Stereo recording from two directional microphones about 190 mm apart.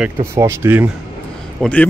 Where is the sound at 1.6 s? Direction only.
5° left (ahead or behind).